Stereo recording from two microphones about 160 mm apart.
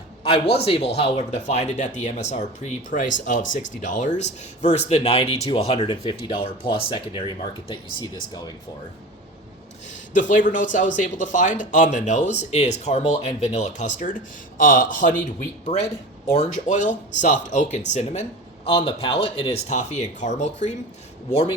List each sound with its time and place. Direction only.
0.2 s a sound: 35° left (ahead or behind)
0.5 s speech: 40° left (ahead or behind)
9.9 s a man's voice: 50° left (ahead or behind)
15.7 s speech: 35° left (ahead or behind)
16.3 s speech: 50° left (ahead or behind)